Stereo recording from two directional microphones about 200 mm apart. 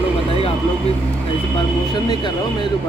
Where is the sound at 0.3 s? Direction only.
30° left (ahead or behind).